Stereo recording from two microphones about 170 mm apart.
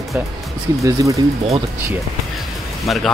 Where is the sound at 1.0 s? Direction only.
20° right (ahead or behind).